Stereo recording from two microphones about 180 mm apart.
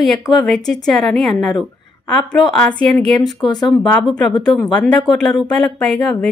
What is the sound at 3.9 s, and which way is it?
A woman's voice, 5° left (ahead or behind).